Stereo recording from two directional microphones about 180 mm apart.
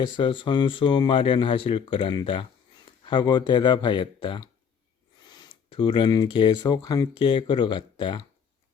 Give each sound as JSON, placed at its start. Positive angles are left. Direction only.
{"t": 0.0, "sound": "speech", "side_deg": 30}